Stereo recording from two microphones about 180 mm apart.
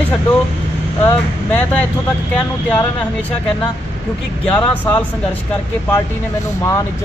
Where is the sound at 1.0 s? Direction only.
10° left (ahead or behind).